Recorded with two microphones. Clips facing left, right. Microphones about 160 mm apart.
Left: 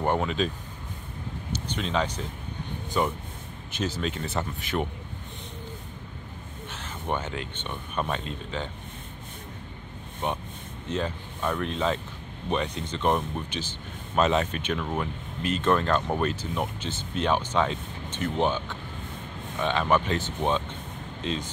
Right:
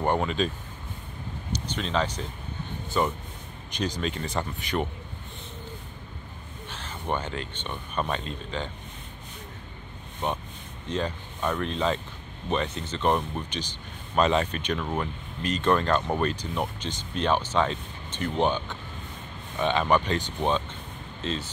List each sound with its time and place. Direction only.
0.0 s speech: centre (ahead or behind)
1.8 s speech: 10° left (ahead or behind)
6.7 s speech: 10° left (ahead or behind)
10.9 s speech: 5° left (ahead or behind)